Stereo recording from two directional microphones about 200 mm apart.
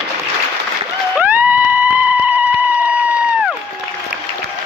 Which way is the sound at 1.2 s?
5° right (ahead or behind).